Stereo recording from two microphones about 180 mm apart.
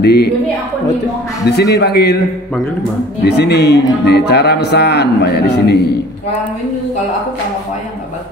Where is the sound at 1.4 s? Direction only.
65° left (ahead or behind).